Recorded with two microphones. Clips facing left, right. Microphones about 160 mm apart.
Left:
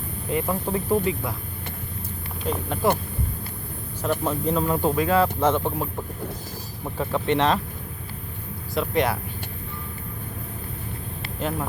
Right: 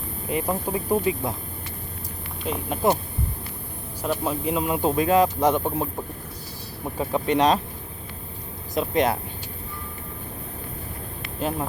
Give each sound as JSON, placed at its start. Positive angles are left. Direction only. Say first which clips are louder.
{"t": 0.3, "sound": "speech", "louder": "even", "side_deg": -15}
{"t": 2.8, "sound": "speech", "louder": "right 1 dB", "side_deg": -20}
{"t": 4.0, "sound": "speech", "louder": "left 1 dB", "side_deg": -10}
{"t": 7.0, "sound": "speech", "louder": "right 1 dB", "side_deg": -15}
{"t": 8.7, "sound": "speech", "louder": "right 1 dB", "side_deg": -20}